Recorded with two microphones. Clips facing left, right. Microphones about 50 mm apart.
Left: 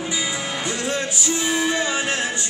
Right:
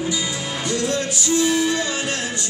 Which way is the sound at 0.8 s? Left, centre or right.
Left.